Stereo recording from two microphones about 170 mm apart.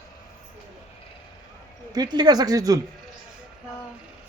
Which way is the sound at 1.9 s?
25° right (ahead or behind).